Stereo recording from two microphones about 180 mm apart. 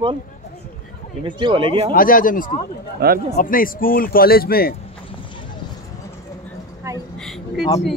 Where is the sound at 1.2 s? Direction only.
25° right (ahead or behind).